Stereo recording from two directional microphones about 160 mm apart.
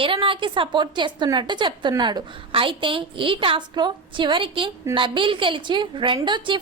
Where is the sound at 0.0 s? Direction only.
35° right (ahead or behind).